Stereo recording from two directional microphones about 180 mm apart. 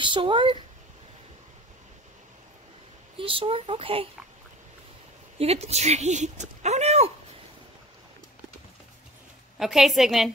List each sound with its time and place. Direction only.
0.0 s speech: 25° right (ahead or behind)
3.2 s speech: 30° right (ahead or behind)
5.4 s speech: 35° right (ahead or behind)
9.6 s a woman's voice: centre (ahead or behind)